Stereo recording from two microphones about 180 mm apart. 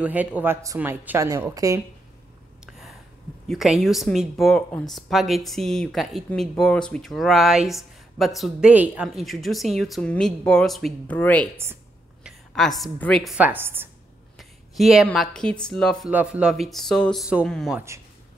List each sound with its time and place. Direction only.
0.0 s speech: 10° right (ahead or behind)
3.4 s speech: centre (ahead or behind)
11.5 s a sound: 15° right (ahead or behind)
13.4 s speech: 10° right (ahead or behind)
16.1 s speech: 5° right (ahead or behind)
17.7 s speech: 15° right (ahead or behind)